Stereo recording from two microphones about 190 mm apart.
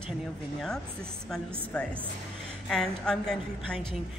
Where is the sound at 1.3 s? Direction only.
5° left (ahead or behind).